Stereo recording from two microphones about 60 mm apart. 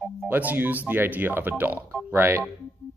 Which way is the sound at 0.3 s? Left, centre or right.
Right.